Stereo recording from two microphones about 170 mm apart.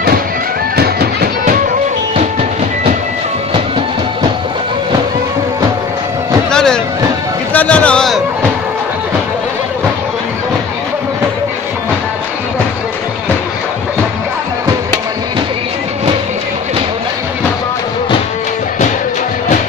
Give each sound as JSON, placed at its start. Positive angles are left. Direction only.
{"t": 0.7, "sound": "music", "side_deg": -65}
{"t": 6.5, "sound": "music", "side_deg": 5}
{"t": 7.5, "sound": "a sound", "side_deg": 10}